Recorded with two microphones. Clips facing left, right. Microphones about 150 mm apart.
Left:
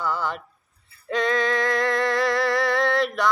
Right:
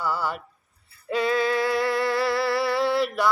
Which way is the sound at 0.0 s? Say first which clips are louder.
Even; 5° right (ahead or behind).